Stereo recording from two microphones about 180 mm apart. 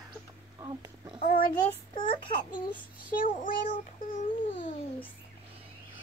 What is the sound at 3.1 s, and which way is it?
Child singing, 50° left (ahead or behind).